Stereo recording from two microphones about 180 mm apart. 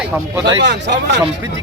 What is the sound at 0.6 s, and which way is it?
Speech, 75° right (ahead or behind).